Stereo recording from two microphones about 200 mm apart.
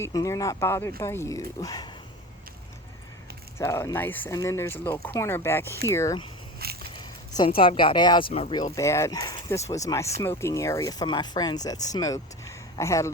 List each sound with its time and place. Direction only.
0.0 s speech: 15° left (ahead or behind)
3.6 s speech: 15° left (ahead or behind)
6.6 s a sound: 50° right (ahead or behind)
7.3 s speech: 25° left (ahead or behind)
8.7 s speech: 15° left (ahead or behind)